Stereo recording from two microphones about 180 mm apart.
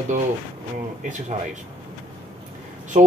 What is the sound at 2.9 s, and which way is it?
Speech, 40° right (ahead or behind).